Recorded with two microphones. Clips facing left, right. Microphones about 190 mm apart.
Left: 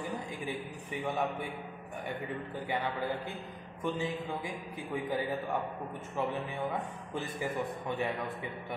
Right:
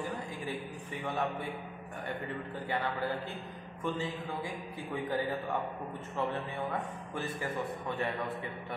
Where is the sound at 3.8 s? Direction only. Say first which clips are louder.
Left 1 dB; 15° left (ahead or behind).